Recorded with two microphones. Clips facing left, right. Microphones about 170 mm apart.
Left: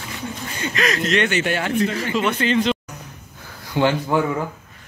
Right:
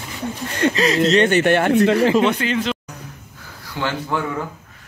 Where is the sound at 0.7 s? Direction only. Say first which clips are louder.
Right 3 dB; 30° right (ahead or behind).